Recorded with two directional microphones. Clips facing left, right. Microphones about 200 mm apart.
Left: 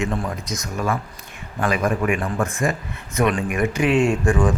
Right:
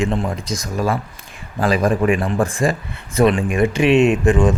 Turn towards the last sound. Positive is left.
turn(degrees=-20)  # may be behind; listen again after turning